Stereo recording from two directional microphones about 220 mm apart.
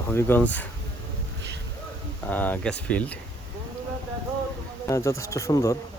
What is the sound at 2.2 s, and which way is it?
Speech, 5° left (ahead or behind).